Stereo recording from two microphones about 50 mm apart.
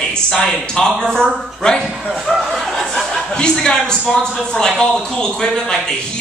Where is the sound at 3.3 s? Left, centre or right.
Centre.